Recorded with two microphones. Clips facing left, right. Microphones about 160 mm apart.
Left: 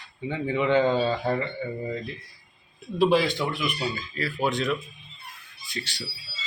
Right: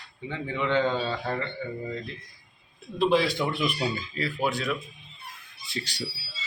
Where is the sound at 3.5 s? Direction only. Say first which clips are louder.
Right 1 dB; 30° right (ahead or behind).